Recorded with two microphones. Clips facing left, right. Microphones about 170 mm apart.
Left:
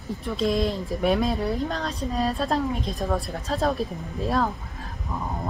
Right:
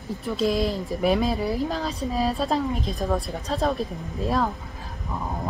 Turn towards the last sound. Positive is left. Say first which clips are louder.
# even
turn(degrees=0)  # may be behind; listen again after turning